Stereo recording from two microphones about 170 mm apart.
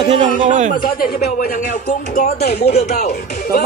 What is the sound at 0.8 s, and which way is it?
Speech, 55° left (ahead or behind).